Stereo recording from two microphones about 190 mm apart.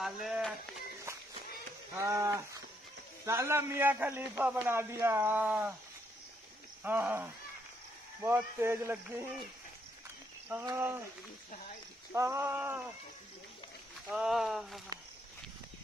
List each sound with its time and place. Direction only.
0.0 s speech: centre (ahead or behind)
2.0 s speech: 15° right (ahead or behind)
6.8 s speech: 10° right (ahead or behind)
10.6 s speech: 15° right (ahead or behind)
12.1 s speech: 15° right (ahead or behind)
14.1 s speech: 5° right (ahead or behind)